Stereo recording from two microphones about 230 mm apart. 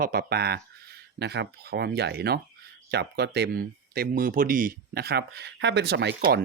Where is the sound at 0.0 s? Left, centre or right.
Right.